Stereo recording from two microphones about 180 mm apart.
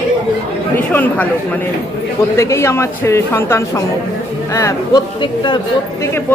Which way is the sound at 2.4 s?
15° left (ahead or behind).